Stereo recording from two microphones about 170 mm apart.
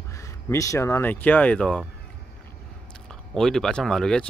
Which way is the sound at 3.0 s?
5° left (ahead or behind).